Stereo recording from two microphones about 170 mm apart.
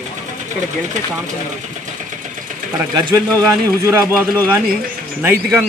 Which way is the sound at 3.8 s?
15° right (ahead or behind).